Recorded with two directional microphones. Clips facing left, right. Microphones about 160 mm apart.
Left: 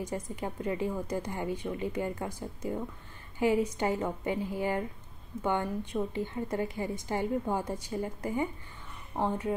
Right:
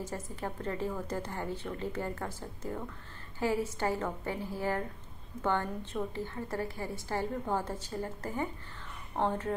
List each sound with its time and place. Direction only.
0.0 s a woman's voice: 15° left (ahead or behind)